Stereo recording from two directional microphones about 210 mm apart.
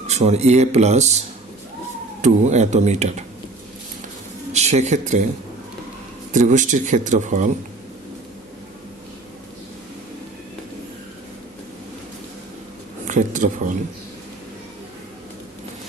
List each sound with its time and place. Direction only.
0.1 s speech: 30° right (ahead or behind)
2.2 s speech: 35° right (ahead or behind)
4.5 s speech: 35° right (ahead or behind)
6.3 s speech: 35° right (ahead or behind)
13.1 s a sound: 35° right (ahead or behind)